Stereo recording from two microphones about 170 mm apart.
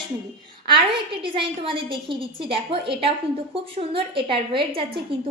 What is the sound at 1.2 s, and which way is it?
A woman's voice, 30° right (ahead or behind).